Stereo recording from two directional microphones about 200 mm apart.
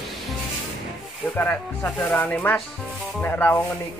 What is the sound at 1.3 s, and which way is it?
Speech, 10° left (ahead or behind).